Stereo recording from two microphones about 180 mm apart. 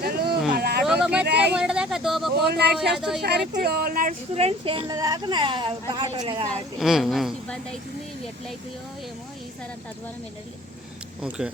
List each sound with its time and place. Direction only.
0.0 s a sound: 60° right (ahead or behind)
0.9 s a sound: 5° right (ahead or behind)
1.2 s a sound: 65° right (ahead or behind)
1.5 s speech: 5° right (ahead or behind)
2.3 s speech: 65° right (ahead or behind)
2.7 s a woman's voice: centre (ahead or behind)
3.2 s speech: 65° right (ahead or behind)
4.4 s a woman's voice: 30° right (ahead or behind)
6.7 s a woman's voice: centre (ahead or behind)
11.2 s a woman's voice: 5° right (ahead or behind)